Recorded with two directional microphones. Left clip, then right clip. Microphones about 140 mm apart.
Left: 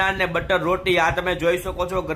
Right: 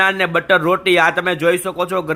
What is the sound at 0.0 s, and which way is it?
Speech, 25° right (ahead or behind).